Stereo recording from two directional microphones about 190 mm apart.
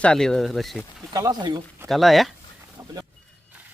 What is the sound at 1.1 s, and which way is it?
Speech, 20° right (ahead or behind).